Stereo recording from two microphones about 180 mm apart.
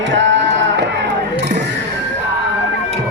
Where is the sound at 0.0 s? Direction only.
85° right.